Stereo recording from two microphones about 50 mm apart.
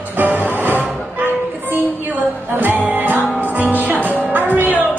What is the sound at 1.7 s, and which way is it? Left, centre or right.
Music, right.